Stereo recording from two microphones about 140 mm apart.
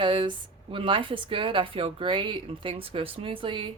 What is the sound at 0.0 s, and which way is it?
Speech, 35° right (ahead or behind).